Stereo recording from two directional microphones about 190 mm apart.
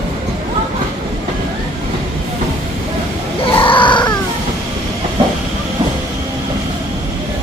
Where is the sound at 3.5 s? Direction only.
25° left (ahead or behind).